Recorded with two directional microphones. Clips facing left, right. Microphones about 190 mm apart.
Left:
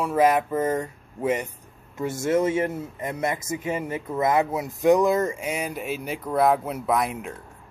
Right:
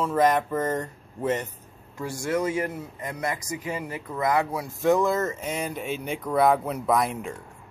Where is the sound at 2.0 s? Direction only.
25° left (ahead or behind); by 7.3 s 5° left (ahead or behind).